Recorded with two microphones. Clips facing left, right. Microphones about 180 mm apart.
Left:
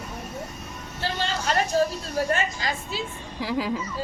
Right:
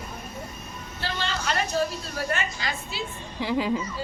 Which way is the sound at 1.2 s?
40° left (ahead or behind).